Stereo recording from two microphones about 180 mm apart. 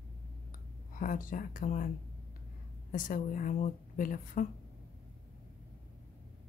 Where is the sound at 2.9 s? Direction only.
50° left (ahead or behind).